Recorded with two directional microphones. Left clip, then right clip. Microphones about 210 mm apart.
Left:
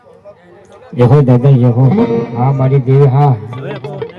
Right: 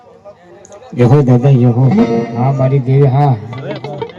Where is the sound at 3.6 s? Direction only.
10° left (ahead or behind).